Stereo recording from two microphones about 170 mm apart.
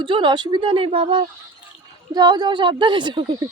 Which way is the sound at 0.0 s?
30° right (ahead or behind).